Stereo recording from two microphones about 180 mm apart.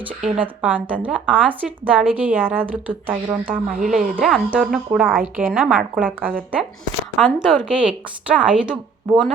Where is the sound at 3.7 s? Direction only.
50° right (ahead or behind).